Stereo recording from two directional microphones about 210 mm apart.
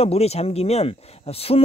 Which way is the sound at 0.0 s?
30° left (ahead or behind).